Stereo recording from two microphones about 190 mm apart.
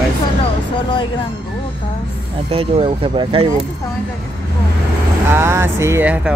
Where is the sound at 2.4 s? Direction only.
30° right (ahead or behind).